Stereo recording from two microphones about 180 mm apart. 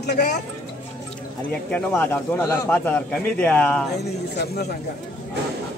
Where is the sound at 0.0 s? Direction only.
65° left (ahead or behind).